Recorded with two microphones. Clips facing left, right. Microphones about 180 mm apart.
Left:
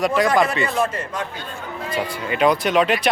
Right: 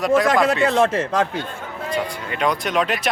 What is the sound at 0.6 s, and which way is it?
Speech, 90° right.